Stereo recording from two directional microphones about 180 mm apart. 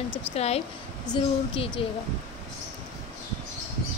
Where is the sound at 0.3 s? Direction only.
35° left (ahead or behind).